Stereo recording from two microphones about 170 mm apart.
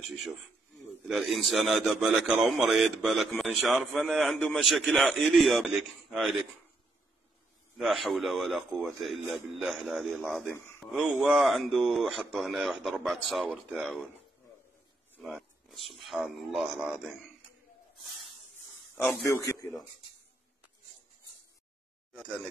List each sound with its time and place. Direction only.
1.0 s a man's voice: centre (ahead or behind)
7.7 s a man's voice: centre (ahead or behind)
15.2 s a man's voice: centre (ahead or behind)
19.2 s a man's voice: 15° left (ahead or behind)